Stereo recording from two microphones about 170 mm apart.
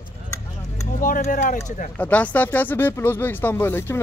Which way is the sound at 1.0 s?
55° left (ahead or behind).